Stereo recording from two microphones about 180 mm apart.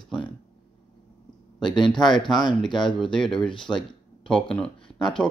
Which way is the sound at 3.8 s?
5° left (ahead or behind).